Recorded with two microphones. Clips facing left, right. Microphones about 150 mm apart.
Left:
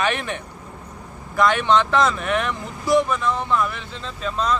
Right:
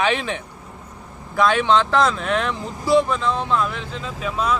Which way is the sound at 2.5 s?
15° right (ahead or behind).